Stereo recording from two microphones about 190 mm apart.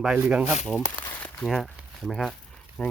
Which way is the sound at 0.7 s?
5° left (ahead or behind).